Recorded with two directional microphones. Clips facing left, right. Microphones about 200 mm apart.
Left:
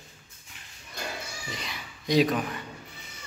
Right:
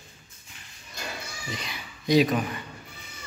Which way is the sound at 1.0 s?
55° left (ahead or behind).